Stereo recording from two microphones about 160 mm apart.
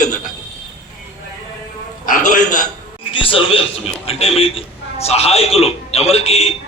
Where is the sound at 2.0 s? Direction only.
55° left (ahead or behind).